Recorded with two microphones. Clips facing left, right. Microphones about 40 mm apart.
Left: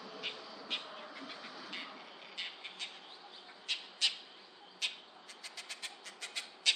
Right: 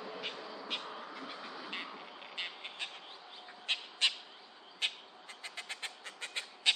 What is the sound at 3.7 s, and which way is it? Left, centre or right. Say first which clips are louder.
Owl: right 4 dB; right.